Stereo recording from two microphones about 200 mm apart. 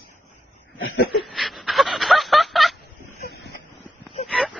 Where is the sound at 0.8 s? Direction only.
55° left (ahead or behind).